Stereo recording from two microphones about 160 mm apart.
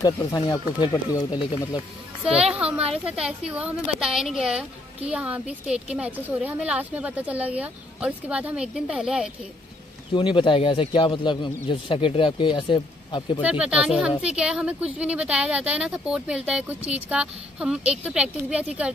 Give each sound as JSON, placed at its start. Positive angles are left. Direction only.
{"t": 0.0, "sound": "speech", "side_deg": 25}
{"t": 2.5, "sound": "a woman's voice", "side_deg": -5}
{"t": 10.1, "sound": "speech", "side_deg": 30}
{"t": 13.4, "sound": "a woman's voice", "side_deg": -10}